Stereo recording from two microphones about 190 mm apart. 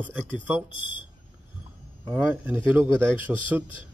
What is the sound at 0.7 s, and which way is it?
Speech, 25° left (ahead or behind).